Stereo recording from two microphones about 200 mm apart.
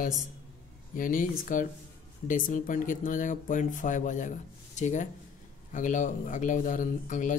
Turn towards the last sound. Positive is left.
turn(degrees=40)  # may be behind; listen again after turning